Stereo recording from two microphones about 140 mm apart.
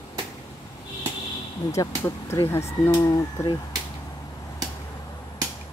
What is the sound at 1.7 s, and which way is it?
Speech, 20° left (ahead or behind).